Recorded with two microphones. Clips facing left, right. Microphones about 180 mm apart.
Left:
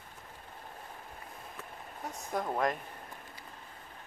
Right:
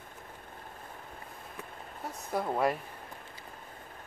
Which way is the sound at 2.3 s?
10° right (ahead or behind).